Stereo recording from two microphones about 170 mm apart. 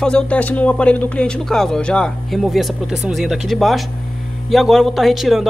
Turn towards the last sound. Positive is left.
turn(degrees=0)  # may be behind; listen again after turning